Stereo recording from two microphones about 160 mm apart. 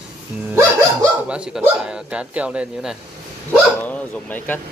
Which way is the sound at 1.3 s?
5° right (ahead or behind).